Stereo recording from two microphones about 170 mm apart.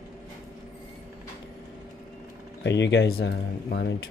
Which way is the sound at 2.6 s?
90° left.